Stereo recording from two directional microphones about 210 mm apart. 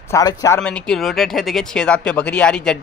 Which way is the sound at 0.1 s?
15° left (ahead or behind).